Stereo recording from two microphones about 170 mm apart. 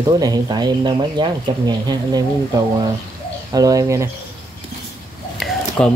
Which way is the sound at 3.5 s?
20° right (ahead or behind).